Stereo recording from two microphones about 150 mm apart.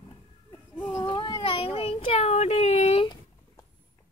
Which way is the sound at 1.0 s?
30° left (ahead or behind).